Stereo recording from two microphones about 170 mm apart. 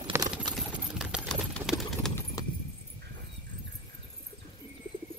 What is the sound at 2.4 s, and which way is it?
Horse, 20° left (ahead or behind).